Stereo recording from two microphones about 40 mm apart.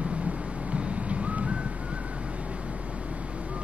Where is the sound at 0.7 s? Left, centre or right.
Right.